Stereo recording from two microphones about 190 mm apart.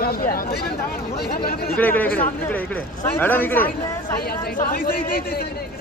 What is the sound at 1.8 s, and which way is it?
Speech, 10° left (ahead or behind).